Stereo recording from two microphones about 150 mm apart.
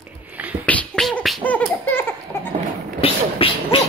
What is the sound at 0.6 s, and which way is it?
Beatboxing, 10° left (ahead or behind).